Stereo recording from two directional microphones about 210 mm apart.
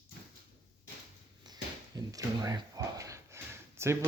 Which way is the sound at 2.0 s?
15° right (ahead or behind).